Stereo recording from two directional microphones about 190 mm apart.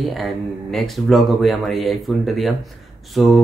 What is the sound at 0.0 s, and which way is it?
Speech, centre (ahead or behind).